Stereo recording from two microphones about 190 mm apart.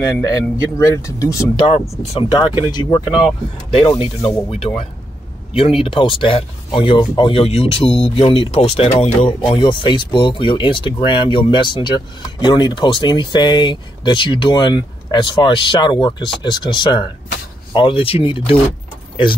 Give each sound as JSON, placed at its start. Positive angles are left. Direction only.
{"t": 0.0, "sound": "speech", "side_deg": 15}
{"t": 3.0, "sound": "speech", "side_deg": -5}
{"t": 3.7, "sound": "speech", "side_deg": 25}